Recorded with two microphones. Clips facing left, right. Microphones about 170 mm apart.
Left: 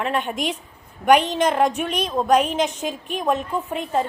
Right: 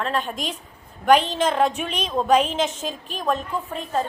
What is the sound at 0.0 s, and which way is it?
A woman's voice, 15° left (ahead or behind).